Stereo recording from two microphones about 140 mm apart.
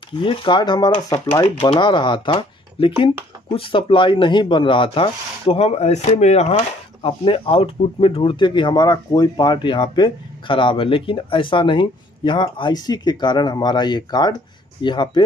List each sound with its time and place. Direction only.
0.1 s speech: 35° left (ahead or behind); by 6.5 s 55° left (ahead or behind)
7.0 s speech: 40° left (ahead or behind)